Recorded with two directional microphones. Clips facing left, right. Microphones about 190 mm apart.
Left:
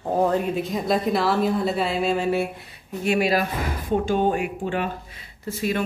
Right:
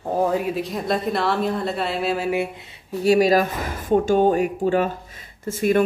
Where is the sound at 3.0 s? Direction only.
40° right (ahead or behind).